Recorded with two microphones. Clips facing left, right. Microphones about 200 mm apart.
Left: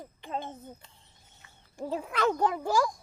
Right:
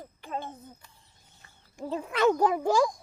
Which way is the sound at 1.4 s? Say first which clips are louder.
Even; 40° right (ahead or behind).